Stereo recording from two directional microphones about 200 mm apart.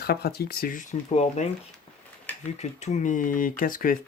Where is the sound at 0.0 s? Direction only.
50° left (ahead or behind); by 1.5 s 35° left (ahead or behind).